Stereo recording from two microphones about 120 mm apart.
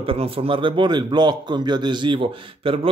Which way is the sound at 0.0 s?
50° right (ahead or behind).